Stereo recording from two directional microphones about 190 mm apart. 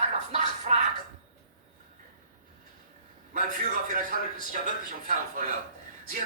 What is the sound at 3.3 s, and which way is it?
A man's voice, 40° right (ahead or behind).